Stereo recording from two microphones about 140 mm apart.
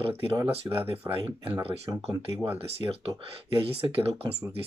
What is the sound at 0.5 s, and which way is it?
Speech, 45° right (ahead or behind).